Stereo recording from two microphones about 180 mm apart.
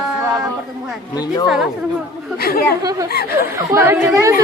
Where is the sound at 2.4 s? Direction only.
60° left (ahead or behind).